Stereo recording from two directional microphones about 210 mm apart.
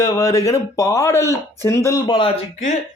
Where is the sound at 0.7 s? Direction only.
15° left (ahead or behind).